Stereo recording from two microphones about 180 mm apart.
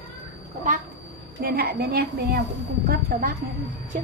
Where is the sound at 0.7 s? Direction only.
45° right (ahead or behind).